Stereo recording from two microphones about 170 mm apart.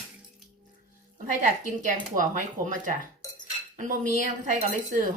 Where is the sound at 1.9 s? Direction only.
50° right (ahead or behind).